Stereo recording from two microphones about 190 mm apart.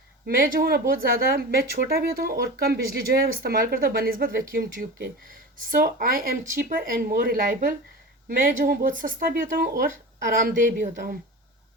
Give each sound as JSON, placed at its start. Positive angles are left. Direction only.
{"t": 0.3, "sound": "speech", "side_deg": -50}